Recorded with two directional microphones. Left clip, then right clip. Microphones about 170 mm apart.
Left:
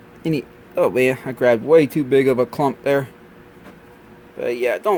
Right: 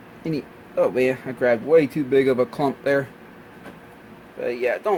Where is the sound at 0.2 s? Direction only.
40° left (ahead or behind).